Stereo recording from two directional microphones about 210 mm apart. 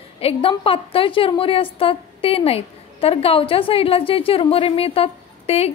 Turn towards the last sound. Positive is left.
turn(degrees=30)  # may be behind; listen again after turning